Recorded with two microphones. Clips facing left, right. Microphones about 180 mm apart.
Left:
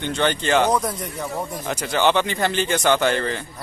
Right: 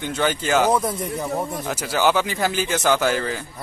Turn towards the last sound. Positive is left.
turn(degrees=-5)  # may be behind; listen again after turning